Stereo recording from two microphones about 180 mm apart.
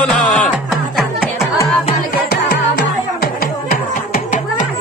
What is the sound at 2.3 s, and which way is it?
Music, 60° left (ahead or behind).